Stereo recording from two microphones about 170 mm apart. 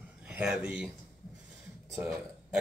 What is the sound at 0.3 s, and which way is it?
Speech, 5° right (ahead or behind).